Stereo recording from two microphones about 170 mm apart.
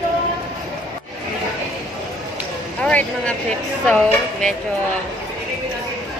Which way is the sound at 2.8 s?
5° left (ahead or behind).